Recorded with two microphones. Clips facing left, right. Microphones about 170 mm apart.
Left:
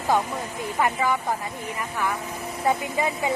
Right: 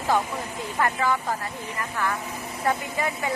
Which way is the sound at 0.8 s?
15° left (ahead or behind).